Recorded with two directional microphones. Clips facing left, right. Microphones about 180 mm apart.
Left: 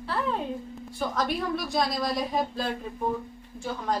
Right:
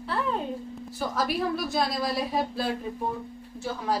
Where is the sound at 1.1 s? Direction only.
5° right (ahead or behind).